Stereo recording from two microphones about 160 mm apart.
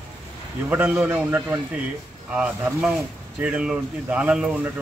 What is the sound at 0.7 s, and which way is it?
Speech, 10° right (ahead or behind).